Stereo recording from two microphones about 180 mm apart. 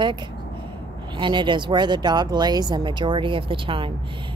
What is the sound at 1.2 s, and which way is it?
Speech, 25° right (ahead or behind).